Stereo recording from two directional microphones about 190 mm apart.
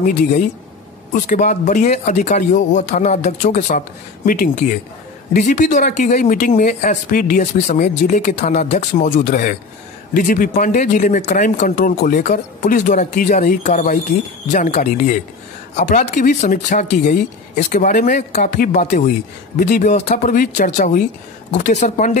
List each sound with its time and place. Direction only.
1.2 s speech: 40° left (ahead or behind)